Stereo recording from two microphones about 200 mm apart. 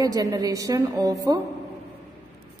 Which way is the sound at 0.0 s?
20° right (ahead or behind).